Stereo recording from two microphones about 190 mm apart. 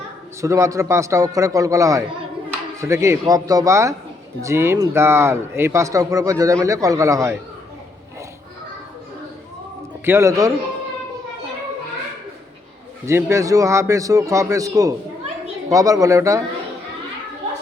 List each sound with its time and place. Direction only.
0.4 s a man's voice: 15° right (ahead or behind)
10.1 s a man's voice: 15° right (ahead or behind)
13.1 s a man's voice: 15° right (ahead or behind)